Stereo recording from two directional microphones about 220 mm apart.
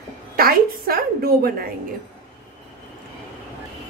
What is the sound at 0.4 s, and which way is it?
A woman's voice, 40° right (ahead or behind).